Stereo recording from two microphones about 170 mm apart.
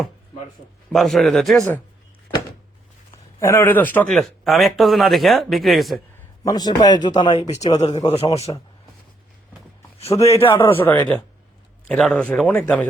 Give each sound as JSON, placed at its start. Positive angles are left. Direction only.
{"t": 0.9, "sound": "speech", "side_deg": 0}
{"t": 3.4, "sound": "speech", "side_deg": 15}
{"t": 6.4, "sound": "a man's voice", "side_deg": 20}
{"t": 7.6, "sound": "a man's voice", "side_deg": 40}
{"t": 10.3, "sound": "a man's voice", "side_deg": 30}
{"t": 10.6, "sound": "speech", "side_deg": 10}